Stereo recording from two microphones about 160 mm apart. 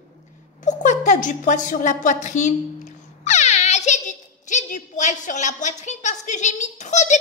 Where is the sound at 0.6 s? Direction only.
50° left (ahead or behind).